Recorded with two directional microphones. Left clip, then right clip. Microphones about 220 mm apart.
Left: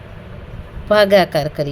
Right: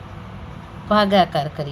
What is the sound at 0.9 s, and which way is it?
Speech, 65° left (ahead or behind).